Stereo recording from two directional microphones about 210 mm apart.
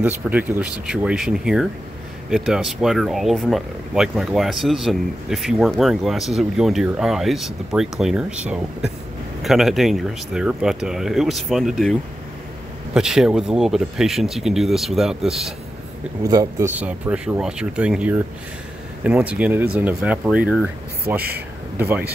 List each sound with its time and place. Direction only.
0.0 s speech: 5° right (ahead or behind)
16.2 s speech: 15° right (ahead or behind)